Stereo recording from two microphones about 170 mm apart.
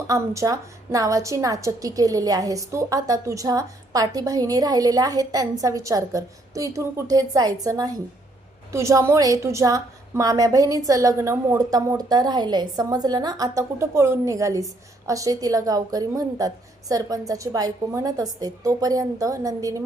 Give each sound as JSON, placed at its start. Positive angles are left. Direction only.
{"t": 0.1, "sound": "a woman's voice", "side_deg": -20}